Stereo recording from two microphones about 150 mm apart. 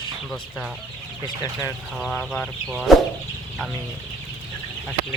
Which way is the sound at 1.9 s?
Centre (ahead or behind).